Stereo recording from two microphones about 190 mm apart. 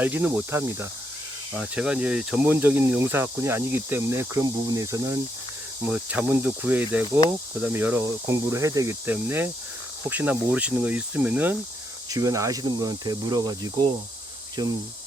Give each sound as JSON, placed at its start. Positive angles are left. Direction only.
{"t": 0.0, "sound": "speech", "side_deg": -10}